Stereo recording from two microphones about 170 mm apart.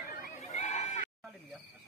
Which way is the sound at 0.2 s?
45° left (ahead or behind).